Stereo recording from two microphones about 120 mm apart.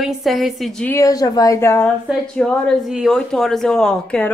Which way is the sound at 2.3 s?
5° left (ahead or behind).